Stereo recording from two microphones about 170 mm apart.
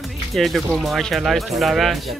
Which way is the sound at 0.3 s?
Centre (ahead or behind).